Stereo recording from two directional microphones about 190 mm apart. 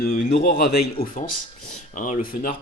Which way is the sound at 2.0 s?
40° left (ahead or behind).